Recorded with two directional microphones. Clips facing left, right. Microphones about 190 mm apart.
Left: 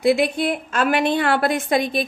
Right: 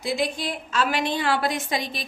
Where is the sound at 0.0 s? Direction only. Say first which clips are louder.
Left 8 dB; 60° left (ahead or behind).